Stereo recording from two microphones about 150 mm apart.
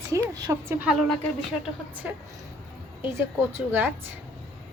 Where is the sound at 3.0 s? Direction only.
15° right (ahead or behind).